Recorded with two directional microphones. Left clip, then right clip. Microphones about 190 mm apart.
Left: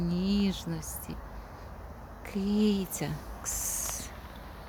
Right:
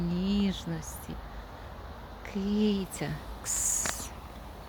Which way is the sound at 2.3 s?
10° left (ahead or behind).